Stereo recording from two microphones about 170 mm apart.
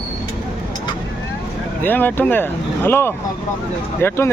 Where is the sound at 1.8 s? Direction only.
10° left (ahead or behind).